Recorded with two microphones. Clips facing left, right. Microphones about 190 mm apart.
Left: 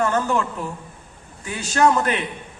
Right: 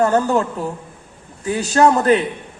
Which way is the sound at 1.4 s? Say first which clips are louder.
Right 4 dB; 35° right (ahead or behind).